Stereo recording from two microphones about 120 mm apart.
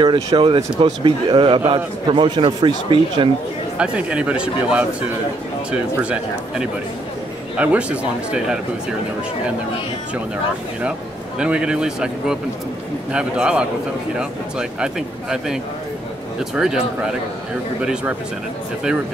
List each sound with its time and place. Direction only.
0.0 s speech: 40° right (ahead or behind)
3.7 s speech: 10° right (ahead or behind)
10.8 s speech: 10° right (ahead or behind)